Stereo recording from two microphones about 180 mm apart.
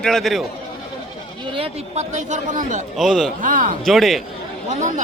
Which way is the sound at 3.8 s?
Centre (ahead or behind).